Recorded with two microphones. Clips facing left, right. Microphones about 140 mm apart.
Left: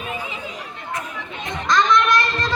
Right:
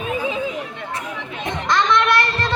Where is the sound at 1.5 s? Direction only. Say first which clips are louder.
Even; 65° right (ahead or behind).